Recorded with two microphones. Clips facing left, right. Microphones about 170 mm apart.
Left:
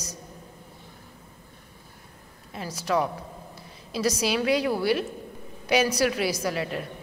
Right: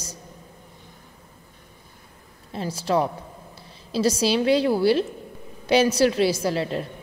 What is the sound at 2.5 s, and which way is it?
A woman's voice, 30° right (ahead or behind).